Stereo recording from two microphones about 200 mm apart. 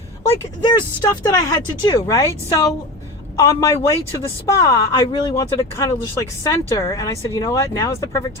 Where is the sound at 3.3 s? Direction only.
15° left (ahead or behind).